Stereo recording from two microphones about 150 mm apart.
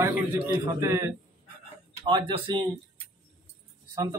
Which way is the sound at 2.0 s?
30° right (ahead or behind).